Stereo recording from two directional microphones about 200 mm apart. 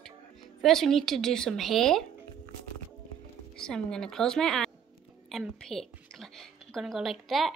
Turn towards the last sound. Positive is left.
turn(degrees=0)  # may be behind; listen again after turning